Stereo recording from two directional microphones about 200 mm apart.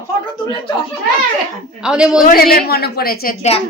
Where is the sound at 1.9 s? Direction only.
5° right (ahead or behind).